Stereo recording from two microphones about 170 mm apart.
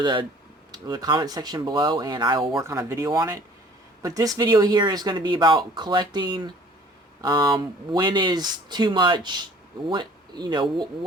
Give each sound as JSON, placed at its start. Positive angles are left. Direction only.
{"t": 0.0, "sound": "speech", "side_deg": -30}
{"t": 2.6, "sound": "speech", "side_deg": -15}